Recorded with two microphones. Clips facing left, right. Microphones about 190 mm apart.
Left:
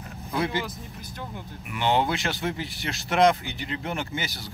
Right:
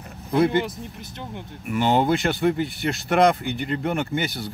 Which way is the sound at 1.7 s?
45° right (ahead or behind).